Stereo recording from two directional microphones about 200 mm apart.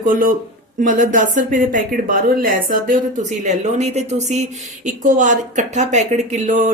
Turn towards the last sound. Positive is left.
turn(degrees=-40)  # may be behind; listen again after turning